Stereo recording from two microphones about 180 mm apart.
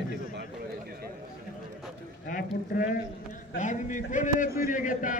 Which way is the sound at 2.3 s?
45° left (ahead or behind).